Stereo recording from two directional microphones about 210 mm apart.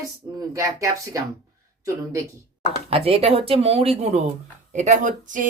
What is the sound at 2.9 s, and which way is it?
Speech, 30° right (ahead or behind).